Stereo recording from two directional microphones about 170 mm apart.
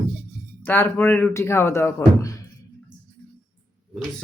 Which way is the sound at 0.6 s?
10° left (ahead or behind).